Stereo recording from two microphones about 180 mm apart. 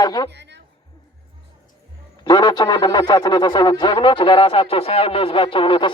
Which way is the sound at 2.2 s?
20° left (ahead or behind).